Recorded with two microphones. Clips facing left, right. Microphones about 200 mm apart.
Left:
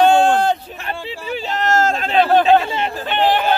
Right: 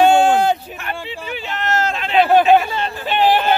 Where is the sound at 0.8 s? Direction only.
35° left (ahead or behind).